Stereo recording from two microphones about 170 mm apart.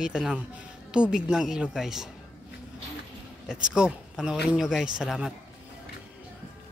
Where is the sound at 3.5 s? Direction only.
5° right (ahead or behind).